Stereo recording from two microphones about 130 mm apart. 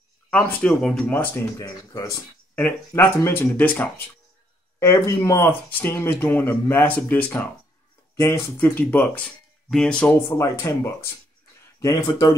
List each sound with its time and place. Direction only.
0.3 s speech: 15° left (ahead or behind)
1.9 s speech: 30° left (ahead or behind)
2.5 s speech: 15° left (ahead or behind)
4.7 s speech: 25° left (ahead or behind); by 10.1 s 5° left (ahead or behind)
10.2 s speech: 25° left (ahead or behind)
11.8 s speech: 35° left (ahead or behind)